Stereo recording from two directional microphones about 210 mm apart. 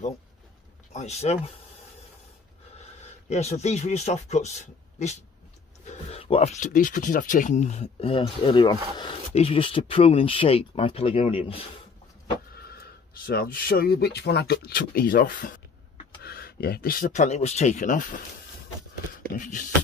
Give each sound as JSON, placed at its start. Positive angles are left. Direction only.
{"t": 0.9, "sound": "speech", "side_deg": 30}
{"t": 3.0, "sound": "a man's voice", "side_deg": 30}
{"t": 13.1, "sound": "speech", "side_deg": 45}
{"t": 19.2, "sound": "speech", "side_deg": 40}